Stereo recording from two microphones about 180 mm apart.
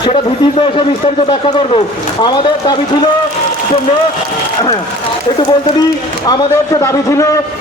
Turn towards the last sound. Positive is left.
turn(degrees=15)  # may be behind; listen again after turning